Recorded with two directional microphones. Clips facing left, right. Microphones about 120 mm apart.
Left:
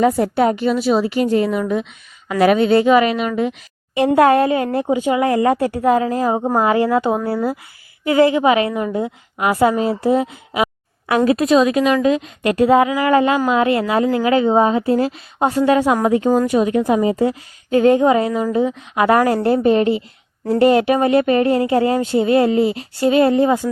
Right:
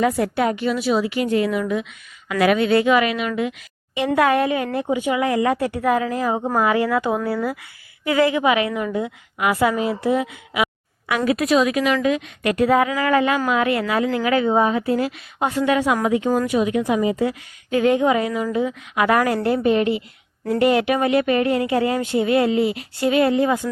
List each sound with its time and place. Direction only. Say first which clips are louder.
0.0 s speech: left 4 dB; 30° left (ahead or behind)